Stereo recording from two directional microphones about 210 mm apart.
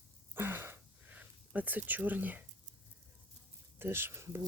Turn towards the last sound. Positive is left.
turn(degrees=-10)  # may be behind; listen again after turning